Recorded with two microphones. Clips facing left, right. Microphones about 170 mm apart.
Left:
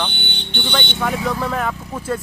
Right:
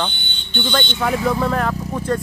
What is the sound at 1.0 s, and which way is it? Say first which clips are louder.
Speech: right 3 dB; centre (ahead or behind).